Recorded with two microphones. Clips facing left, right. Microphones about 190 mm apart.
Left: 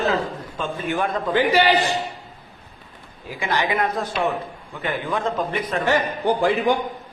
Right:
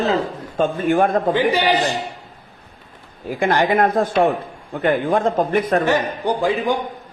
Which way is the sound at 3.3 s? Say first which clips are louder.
Right 6 dB; 50° right (ahead or behind).